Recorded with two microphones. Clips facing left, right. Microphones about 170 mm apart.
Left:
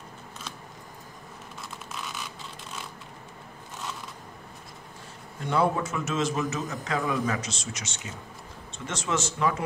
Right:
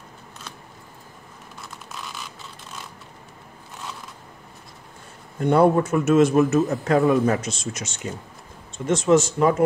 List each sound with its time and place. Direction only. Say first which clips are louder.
5.4 s a man's voice: right 8 dB; 55° right (ahead or behind)